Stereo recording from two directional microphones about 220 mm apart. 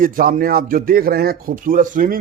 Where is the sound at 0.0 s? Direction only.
40° right (ahead or behind).